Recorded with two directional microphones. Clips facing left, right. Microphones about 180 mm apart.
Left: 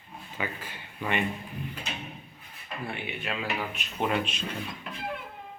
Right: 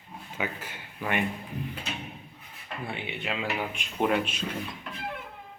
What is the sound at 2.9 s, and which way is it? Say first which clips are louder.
Speech: right 2 dB; 20° right (ahead or behind).